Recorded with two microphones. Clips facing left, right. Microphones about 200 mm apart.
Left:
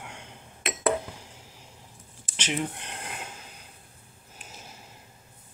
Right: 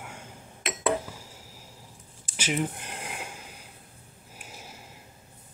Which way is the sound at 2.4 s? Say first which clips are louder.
Right 2 dB; 5° right (ahead or behind).